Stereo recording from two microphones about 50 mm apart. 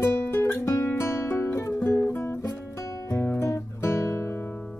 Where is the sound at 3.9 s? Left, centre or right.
Left.